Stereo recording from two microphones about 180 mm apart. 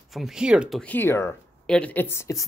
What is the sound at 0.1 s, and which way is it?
Speech, centre (ahead or behind).